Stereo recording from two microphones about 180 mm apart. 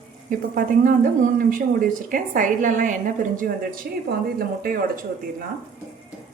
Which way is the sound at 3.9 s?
60° right (ahead or behind).